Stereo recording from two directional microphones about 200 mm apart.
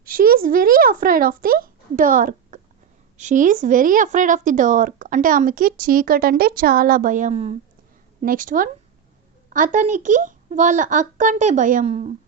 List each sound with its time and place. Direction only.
0.0 s a woman's voice: 45° right (ahead or behind)